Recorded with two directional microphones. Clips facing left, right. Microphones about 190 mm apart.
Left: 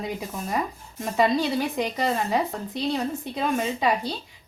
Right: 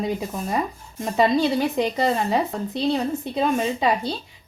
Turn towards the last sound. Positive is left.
turn(degrees=-25)  # may be behind; listen again after turning